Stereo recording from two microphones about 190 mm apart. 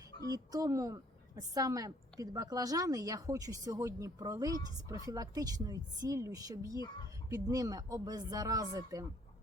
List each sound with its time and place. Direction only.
0.3 s a woman's voice: 20° right (ahead or behind)